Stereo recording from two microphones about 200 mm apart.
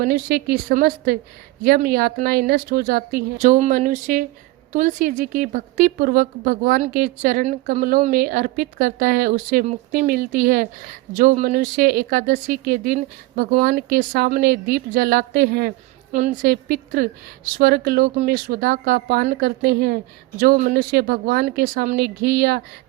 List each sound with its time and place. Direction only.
0.0 s a woman's voice: 50° right (ahead or behind)